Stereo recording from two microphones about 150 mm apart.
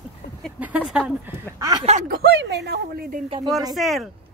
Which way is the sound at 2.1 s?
90° right.